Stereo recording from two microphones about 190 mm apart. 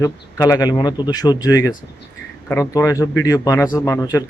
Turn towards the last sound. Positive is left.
turn(degrees=15)  # may be behind; listen again after turning